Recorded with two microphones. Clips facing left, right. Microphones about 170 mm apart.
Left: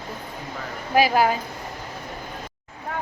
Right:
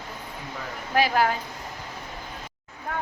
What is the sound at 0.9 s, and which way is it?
Speech, 10° left (ahead or behind).